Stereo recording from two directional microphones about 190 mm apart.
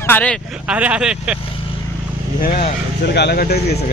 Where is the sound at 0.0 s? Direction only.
10° left (ahead or behind).